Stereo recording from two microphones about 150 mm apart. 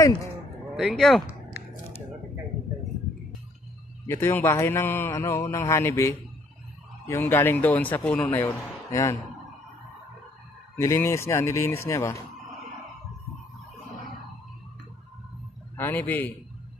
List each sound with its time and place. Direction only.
0.7 s speech: centre (ahead or behind)
4.0 s a man's voice: 15° left (ahead or behind)
10.8 s a man's voice: 20° left (ahead or behind)
15.7 s a man's voice: 15° left (ahead or behind)